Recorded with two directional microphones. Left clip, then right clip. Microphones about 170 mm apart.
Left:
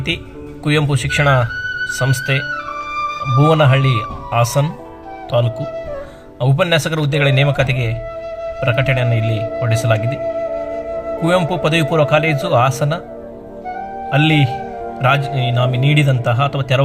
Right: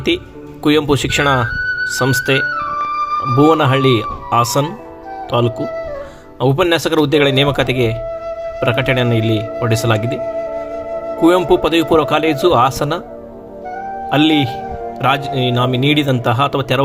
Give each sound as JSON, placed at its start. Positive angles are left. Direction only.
{"t": 0.6, "sound": "speech", "side_deg": -55}
{"t": 11.3, "sound": "a man's voice", "side_deg": -55}
{"t": 14.1, "sound": "a man's voice", "side_deg": -55}